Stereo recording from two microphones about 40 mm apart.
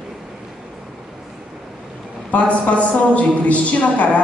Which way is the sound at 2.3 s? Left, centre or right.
Left.